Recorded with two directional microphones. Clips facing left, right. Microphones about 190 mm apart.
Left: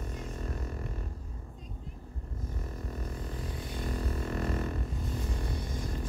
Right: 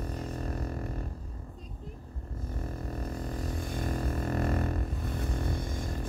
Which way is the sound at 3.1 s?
45° right (ahead or behind).